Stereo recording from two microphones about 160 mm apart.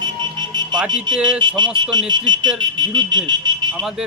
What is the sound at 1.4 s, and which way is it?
Speech, 30° right (ahead or behind).